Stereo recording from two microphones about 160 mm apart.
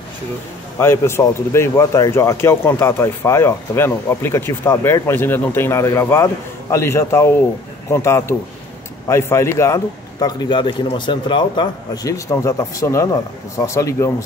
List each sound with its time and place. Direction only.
0.7 s speech: 15° left (ahead or behind)
10.2 s a man's voice: 30° left (ahead or behind)